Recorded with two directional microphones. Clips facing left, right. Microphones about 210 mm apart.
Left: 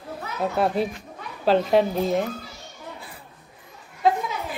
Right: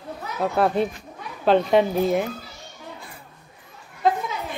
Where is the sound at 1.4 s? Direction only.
Centre (ahead or behind).